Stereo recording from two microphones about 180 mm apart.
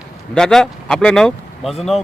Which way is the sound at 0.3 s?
5° left (ahead or behind).